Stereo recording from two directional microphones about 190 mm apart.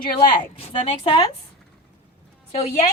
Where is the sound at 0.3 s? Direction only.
30° left (ahead or behind).